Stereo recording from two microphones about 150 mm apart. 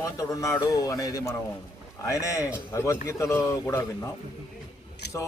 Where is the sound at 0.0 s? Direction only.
20° left (ahead or behind).